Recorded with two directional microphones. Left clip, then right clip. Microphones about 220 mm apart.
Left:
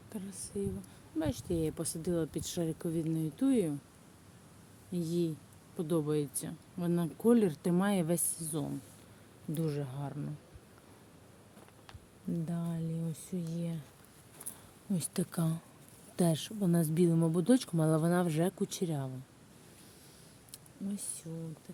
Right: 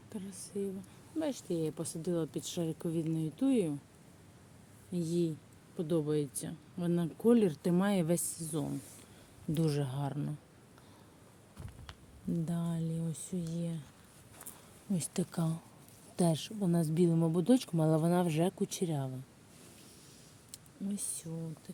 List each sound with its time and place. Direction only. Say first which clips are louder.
0.1 s a woman's voice: even; centre (ahead or behind)
4.9 s a woman's voice: even; centre (ahead or behind)
9.6 s speech: right 3 dB; 20° right (ahead or behind)
12.5 s a woman's voice: right 1 dB; 5° right (ahead or behind)
14.9 s a woman's voice: even; centre (ahead or behind)
20.5 s a sound: right 1 dB; 5° right (ahead or behind)